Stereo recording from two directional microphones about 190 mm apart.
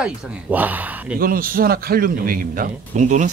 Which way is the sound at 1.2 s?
50° right (ahead or behind).